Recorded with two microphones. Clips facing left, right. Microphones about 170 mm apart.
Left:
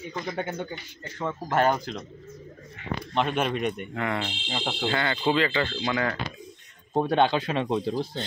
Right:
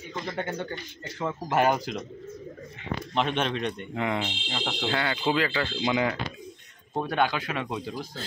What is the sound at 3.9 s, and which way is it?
Speech, 15° right (ahead or behind).